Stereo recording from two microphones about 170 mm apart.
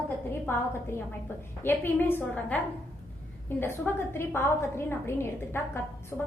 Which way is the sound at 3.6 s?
10° left (ahead or behind).